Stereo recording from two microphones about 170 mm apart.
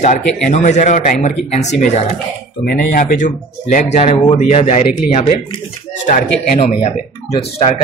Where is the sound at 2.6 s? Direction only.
55° left (ahead or behind).